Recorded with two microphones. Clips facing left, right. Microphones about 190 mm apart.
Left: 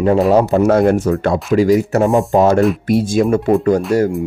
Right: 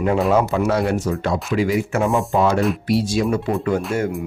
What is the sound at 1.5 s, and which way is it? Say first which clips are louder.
Speech: left 8 dB; 40° left (ahead or behind).